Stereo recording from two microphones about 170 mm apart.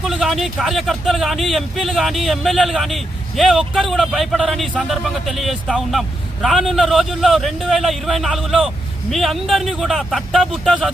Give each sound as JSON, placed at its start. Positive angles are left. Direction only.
{"t": 0.0, "sound": "speech", "side_deg": 0}